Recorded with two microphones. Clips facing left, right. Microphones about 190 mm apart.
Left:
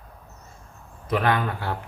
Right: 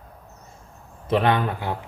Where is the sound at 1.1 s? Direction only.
25° right (ahead or behind).